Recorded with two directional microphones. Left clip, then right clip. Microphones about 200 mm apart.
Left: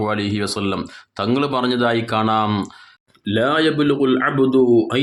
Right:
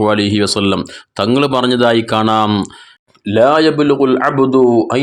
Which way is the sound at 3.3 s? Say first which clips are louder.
Right 7 dB; 5° left (ahead or behind).